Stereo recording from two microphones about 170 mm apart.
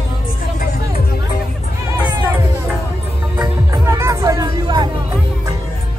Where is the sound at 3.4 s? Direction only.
20° right (ahead or behind).